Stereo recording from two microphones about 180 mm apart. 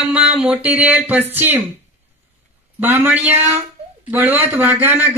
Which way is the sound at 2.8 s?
10° right (ahead or behind).